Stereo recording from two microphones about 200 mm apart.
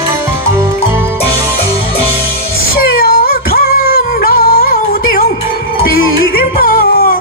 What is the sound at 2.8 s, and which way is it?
Music, 50° left (ahead or behind).